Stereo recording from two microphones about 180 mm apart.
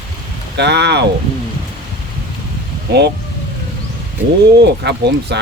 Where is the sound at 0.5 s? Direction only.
70° right (ahead or behind).